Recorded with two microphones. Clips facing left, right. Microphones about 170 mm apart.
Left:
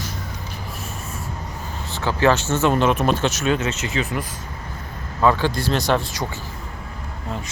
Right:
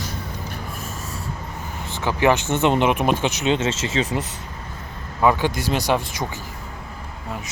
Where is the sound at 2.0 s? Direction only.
15° right (ahead or behind).